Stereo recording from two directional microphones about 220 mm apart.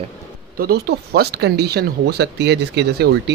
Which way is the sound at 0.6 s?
45° right (ahead or behind).